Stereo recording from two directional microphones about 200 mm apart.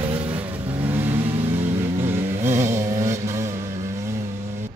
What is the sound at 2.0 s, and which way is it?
Vehicle, 10° right (ahead or behind).